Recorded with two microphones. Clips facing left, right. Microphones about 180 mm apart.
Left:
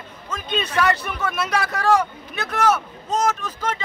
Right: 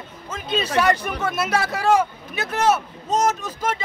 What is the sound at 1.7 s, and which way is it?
Speech, 5° right (ahead or behind).